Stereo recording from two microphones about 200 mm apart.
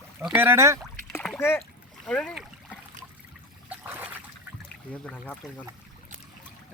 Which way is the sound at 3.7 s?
10° right (ahead or behind).